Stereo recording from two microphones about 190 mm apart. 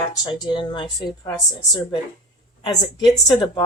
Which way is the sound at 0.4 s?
25° left (ahead or behind).